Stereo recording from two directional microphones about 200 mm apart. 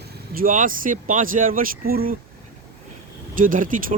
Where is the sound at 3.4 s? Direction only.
40° right (ahead or behind).